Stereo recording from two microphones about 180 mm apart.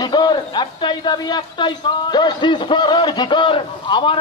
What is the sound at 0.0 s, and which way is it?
A man's voice, 25° left (ahead or behind).